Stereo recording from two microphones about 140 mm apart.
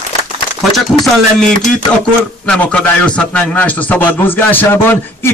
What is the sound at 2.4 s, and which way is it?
A man's voice, 10° left (ahead or behind).